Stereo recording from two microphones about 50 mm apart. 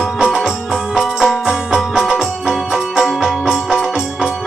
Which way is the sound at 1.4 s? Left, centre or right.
Centre.